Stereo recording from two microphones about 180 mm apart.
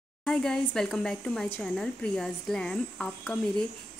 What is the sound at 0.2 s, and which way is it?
Speech, 5° left (ahead or behind).